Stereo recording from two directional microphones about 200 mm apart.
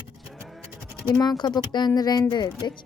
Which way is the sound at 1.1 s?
20° left (ahead or behind).